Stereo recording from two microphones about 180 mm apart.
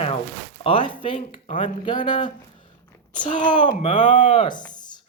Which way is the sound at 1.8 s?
30° left (ahead or behind).